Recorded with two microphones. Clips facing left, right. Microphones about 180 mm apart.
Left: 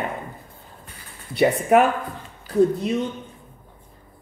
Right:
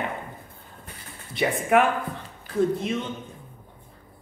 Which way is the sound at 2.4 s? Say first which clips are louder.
Left 5 dB; 35° left (ahead or behind).